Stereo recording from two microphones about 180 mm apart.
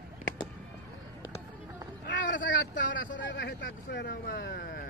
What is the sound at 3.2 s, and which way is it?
Speech, 75° left (ahead or behind).